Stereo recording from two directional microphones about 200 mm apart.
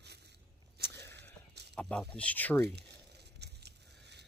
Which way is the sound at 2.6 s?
55° right (ahead or behind).